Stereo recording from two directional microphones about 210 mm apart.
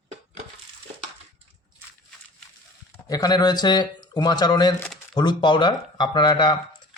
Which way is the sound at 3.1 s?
20° left (ahead or behind).